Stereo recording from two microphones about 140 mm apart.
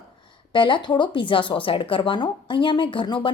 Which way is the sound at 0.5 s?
35° left (ahead or behind).